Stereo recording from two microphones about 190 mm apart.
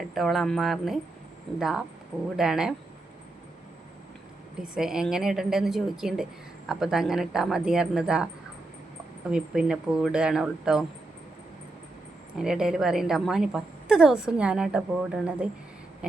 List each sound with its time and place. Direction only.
0.1 s a woman's voice: centre (ahead or behind)
4.7 s a woman's voice: 5° right (ahead or behind)
9.3 s a woman's voice: 5° right (ahead or behind)
12.4 s a woman's voice: 5° right (ahead or behind)